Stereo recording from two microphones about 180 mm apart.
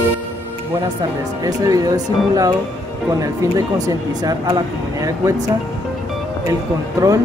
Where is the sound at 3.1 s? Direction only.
20° right (ahead or behind).